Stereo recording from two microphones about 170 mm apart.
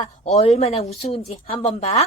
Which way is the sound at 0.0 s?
40° left (ahead or behind).